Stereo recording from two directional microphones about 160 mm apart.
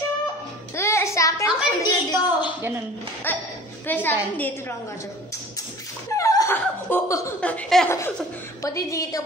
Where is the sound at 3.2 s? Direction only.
15° left (ahead or behind).